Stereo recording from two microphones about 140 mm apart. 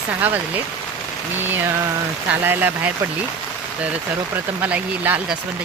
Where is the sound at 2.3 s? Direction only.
15° right (ahead or behind).